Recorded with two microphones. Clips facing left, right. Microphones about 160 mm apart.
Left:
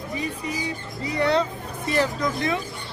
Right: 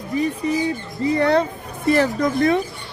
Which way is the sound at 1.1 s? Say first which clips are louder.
Right 3 dB; 50° right (ahead or behind).